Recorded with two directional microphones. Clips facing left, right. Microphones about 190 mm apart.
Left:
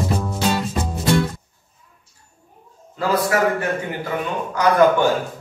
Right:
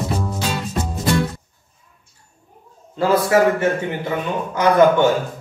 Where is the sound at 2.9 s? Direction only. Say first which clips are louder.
Right 4 dB; 25° right (ahead or behind).